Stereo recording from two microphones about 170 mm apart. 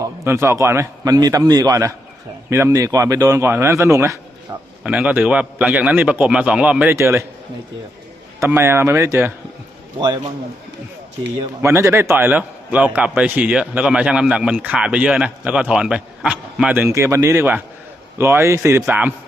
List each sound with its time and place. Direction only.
0.0 s a man's voice: 15° right (ahead or behind)
4.8 s a man's voice: 5° right (ahead or behind)
8.4 s a man's voice: 15° right (ahead or behind)
11.6 s a man's voice: 15° right (ahead or behind)